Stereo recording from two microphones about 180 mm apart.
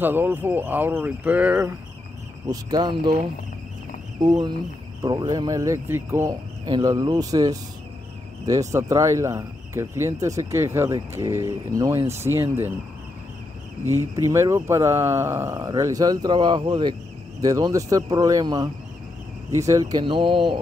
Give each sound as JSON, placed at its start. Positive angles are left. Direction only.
{"t": 0.0, "sound": "speech", "side_deg": -10}
{"t": 2.4, "sound": "speech", "side_deg": -20}
{"t": 4.2, "sound": "speech", "side_deg": -20}
{"t": 13.8, "sound": "speech", "side_deg": -15}